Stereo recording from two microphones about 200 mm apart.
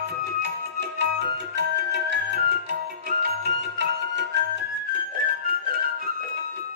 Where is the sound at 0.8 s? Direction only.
60° right (ahead or behind).